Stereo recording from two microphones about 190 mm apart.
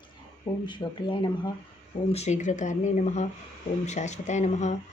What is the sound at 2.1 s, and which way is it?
Speech, 35° left (ahead or behind).